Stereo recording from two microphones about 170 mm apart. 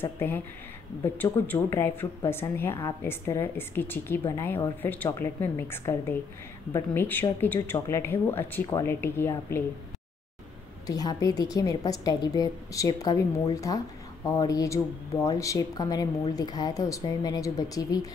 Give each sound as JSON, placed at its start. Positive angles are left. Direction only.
{"t": 0.0, "sound": "speech", "side_deg": 10}
{"t": 10.9, "sound": "a woman's voice", "side_deg": 20}